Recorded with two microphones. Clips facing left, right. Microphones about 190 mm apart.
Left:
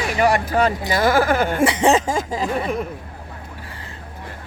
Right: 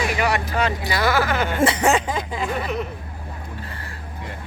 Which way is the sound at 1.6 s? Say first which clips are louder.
Left 1 dB; 15° left (ahead or behind).